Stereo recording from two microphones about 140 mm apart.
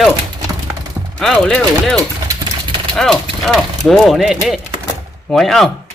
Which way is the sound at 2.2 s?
30° right (ahead or behind).